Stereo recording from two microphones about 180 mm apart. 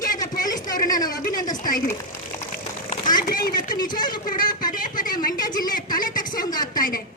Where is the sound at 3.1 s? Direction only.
50° left (ahead or behind).